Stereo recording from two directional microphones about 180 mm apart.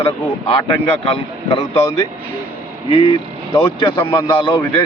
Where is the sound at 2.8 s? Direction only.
30° left (ahead or behind).